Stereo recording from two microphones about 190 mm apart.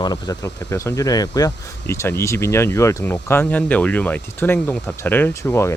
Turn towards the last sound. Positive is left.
turn(degrees=15)  # may be behind; listen again after turning